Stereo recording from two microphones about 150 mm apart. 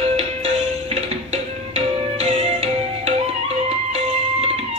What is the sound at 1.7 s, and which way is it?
Music, 45° right (ahead or behind).